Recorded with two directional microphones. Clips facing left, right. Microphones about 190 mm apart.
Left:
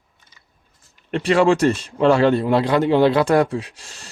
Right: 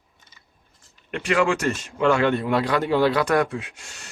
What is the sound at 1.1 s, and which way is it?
A man's voice, 35° left (ahead or behind).